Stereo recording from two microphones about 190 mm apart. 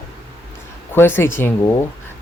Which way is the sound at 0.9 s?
10° left (ahead or behind).